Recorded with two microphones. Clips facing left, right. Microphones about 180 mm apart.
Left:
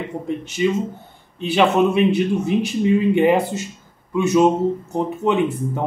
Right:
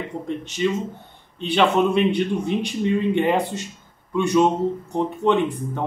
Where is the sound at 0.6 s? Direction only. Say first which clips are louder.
Left 3 dB; 10° left (ahead or behind).